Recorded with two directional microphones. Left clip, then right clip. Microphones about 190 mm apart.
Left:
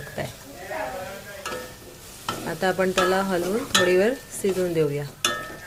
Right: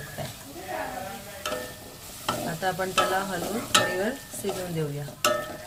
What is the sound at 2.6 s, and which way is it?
Speech, 35° left (ahead or behind).